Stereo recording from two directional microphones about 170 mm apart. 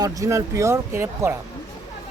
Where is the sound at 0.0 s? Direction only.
20° right (ahead or behind).